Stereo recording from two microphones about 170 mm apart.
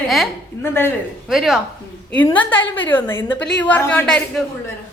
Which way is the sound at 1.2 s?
Centre (ahead or behind).